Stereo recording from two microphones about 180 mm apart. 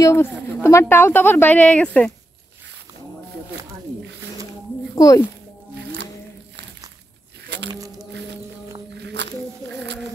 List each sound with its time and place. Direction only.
0.0 s speech: 15° left (ahead or behind)
4.9 s speech: 20° left (ahead or behind)
7.4 s a sound: 70° right (ahead or behind)
8.9 s walk: 75° right (ahead or behind)